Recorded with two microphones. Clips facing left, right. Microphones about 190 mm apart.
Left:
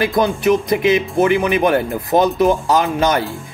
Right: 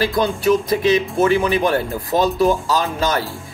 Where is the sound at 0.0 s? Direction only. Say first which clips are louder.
Left 2 dB; 20° left (ahead or behind).